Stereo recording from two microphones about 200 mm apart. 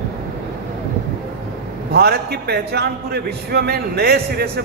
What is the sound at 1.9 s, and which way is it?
A man's voice, 50° right (ahead or behind).